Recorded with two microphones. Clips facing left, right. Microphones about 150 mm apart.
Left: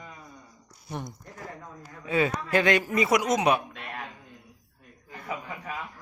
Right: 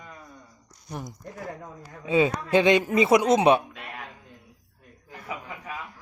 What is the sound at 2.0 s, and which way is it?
A man's voice, 20° right (ahead or behind).